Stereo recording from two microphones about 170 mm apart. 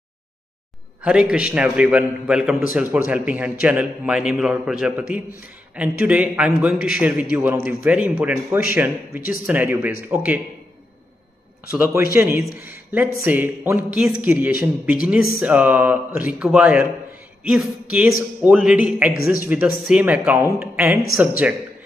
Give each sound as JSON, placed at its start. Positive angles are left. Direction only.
{"t": 1.0, "sound": "a man's voice", "side_deg": -5}
{"t": 11.7, "sound": "a man's voice", "side_deg": -15}
{"t": 19.1, "sound": "speech", "side_deg": 60}
{"t": 19.4, "sound": "a man's voice", "side_deg": -10}